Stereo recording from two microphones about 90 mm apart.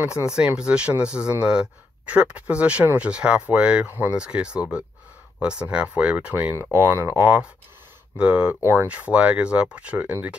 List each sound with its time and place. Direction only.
0.0 s speech: 10° right (ahead or behind)
6.5 s speech: 30° right (ahead or behind)
8.2 s speech: 15° right (ahead or behind)